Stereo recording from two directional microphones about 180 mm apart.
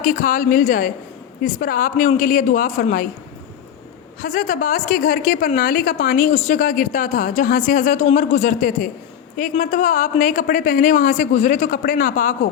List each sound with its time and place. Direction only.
0.0 s a woman's voice: 50° left (ahead or behind)
4.2 s a woman's voice: 50° left (ahead or behind)